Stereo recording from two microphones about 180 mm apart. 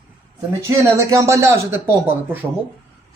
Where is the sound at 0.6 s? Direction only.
15° right (ahead or behind).